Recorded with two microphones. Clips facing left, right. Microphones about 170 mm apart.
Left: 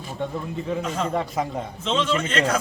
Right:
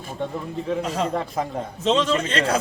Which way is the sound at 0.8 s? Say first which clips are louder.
Even; 35° right (ahead or behind).